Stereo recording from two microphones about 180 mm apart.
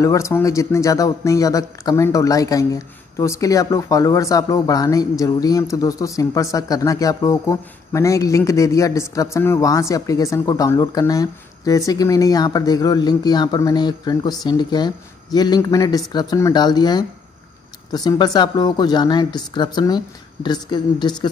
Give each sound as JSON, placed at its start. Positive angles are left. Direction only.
{"t": 0.0, "sound": "speech", "side_deg": 15}